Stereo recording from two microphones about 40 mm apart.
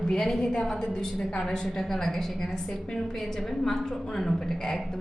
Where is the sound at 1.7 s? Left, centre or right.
Centre.